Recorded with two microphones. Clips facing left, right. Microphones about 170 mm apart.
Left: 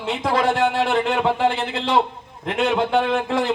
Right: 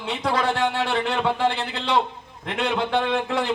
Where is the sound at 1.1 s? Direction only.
25° left (ahead or behind).